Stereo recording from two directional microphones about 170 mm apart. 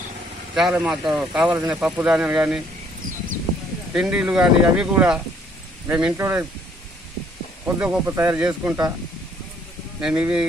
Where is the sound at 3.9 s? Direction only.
5° right (ahead or behind).